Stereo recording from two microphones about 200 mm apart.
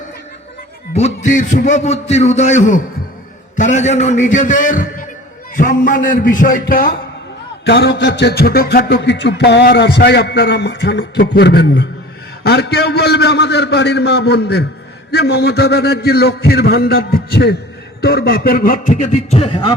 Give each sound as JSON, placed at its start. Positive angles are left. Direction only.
{"t": 0.9, "sound": "a man's voice", "side_deg": 35}